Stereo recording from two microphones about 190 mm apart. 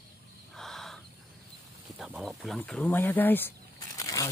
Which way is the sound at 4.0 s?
20° left (ahead or behind).